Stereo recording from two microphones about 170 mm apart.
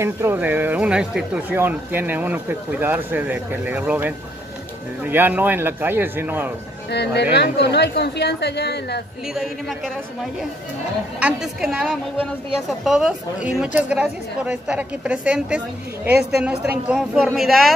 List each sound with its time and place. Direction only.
0.0 s speech: 15° right (ahead or behind)
6.9 s a woman's voice: 80° left
9.3 s speech: centre (ahead or behind)
11.1 s speech: 5° right (ahead or behind)